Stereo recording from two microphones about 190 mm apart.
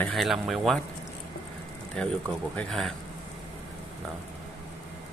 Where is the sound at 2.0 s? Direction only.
5° left (ahead or behind).